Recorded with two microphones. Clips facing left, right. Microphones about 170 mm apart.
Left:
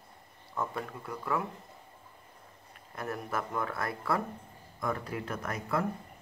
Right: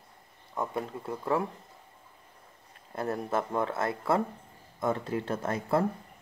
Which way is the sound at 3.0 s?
25° right (ahead or behind).